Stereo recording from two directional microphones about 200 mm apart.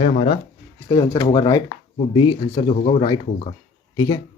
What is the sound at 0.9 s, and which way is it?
Speech, 20° left (ahead or behind).